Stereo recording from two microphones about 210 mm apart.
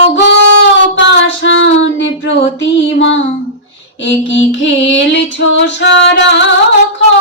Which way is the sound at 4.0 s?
60° left (ahead or behind).